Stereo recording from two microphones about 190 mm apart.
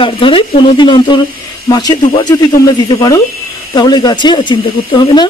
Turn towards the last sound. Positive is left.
turn(degrees=25)  # may be behind; listen again after turning